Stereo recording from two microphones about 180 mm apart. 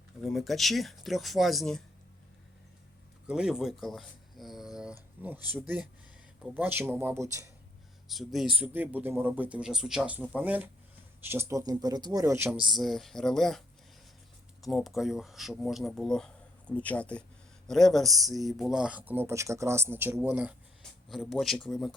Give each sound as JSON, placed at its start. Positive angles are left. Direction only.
{"t": 0.2, "sound": "speech", "side_deg": 0}
{"t": 3.2, "sound": "speech", "side_deg": -5}
{"t": 6.4, "sound": "speech", "side_deg": -10}
{"t": 8.0, "sound": "speech", "side_deg": 0}
{"t": 12.6, "sound": "speech", "side_deg": 0}
{"t": 14.6, "sound": "speech", "side_deg": 0}